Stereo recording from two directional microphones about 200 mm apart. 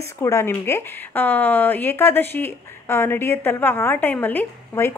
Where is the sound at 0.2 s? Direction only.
10° left (ahead or behind).